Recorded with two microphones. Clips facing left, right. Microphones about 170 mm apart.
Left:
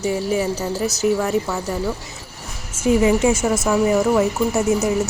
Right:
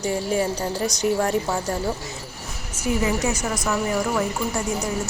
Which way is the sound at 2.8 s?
25° left (ahead or behind).